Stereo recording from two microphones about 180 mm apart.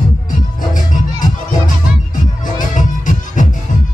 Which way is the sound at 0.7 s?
45° left (ahead or behind).